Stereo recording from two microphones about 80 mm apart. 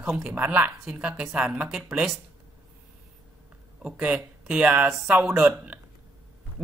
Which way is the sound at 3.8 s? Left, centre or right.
Centre.